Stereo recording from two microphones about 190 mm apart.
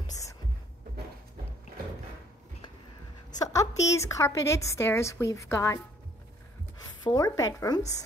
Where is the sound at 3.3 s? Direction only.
20° left (ahead or behind).